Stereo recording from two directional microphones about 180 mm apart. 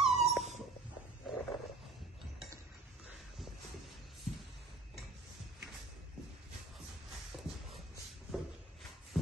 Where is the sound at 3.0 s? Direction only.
Centre (ahead or behind).